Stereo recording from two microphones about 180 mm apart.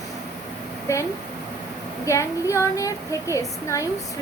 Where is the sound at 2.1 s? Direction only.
15° left (ahead or behind).